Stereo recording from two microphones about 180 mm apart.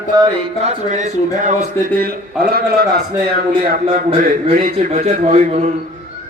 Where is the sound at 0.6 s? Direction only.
40° right (ahead or behind).